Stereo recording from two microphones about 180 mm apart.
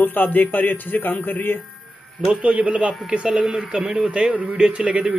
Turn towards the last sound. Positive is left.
turn(degrees=-5)  # may be behind; listen again after turning